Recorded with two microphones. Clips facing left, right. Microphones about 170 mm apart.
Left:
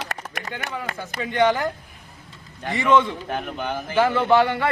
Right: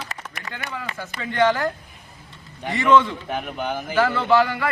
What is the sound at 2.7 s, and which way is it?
Speech, 15° left (ahead or behind).